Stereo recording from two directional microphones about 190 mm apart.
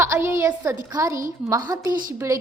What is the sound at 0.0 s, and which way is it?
A woman's voice, 15° right (ahead or behind).